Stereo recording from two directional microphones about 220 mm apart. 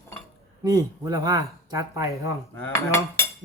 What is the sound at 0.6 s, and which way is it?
Speech, 15° right (ahead or behind).